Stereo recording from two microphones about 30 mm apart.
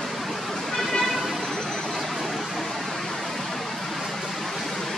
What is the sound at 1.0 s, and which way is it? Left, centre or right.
Music, centre.